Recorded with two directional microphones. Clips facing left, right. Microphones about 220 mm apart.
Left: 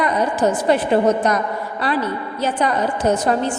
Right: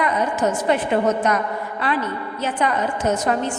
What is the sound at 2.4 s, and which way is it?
A woman's voice, 35° left (ahead or behind).